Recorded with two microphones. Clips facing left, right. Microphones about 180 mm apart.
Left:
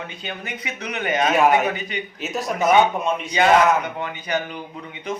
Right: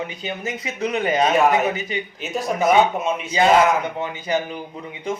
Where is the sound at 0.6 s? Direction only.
25° right (ahead or behind).